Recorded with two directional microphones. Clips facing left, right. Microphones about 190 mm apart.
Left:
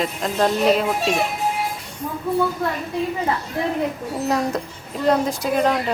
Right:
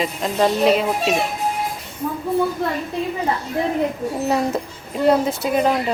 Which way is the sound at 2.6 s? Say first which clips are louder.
Right 1 dB; 30° right (ahead or behind).